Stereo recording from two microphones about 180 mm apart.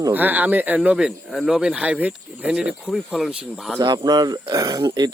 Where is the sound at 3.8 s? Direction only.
25° right (ahead or behind).